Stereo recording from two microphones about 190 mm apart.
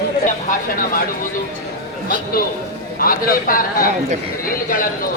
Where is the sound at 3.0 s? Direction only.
50° left (ahead or behind).